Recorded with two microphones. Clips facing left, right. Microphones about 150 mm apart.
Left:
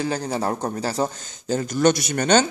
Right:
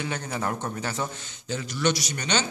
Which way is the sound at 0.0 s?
35° left (ahead or behind).